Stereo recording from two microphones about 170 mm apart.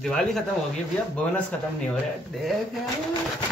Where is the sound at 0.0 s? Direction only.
5° left (ahead or behind).